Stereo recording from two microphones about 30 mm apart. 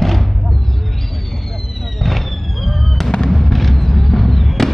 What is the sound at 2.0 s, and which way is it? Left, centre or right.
Fireworks, centre.